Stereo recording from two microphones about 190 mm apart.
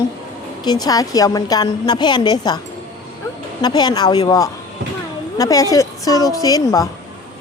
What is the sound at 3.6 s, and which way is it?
A woman's voice, 20° left (ahead or behind).